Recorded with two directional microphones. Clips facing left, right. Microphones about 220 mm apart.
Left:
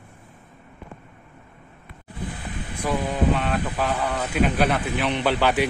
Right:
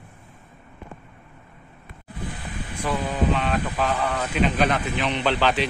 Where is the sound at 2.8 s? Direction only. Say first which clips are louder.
Left 1 dB; 10° left (ahead or behind).